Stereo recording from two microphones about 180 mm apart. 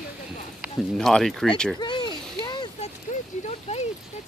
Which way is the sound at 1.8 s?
25° left (ahead or behind).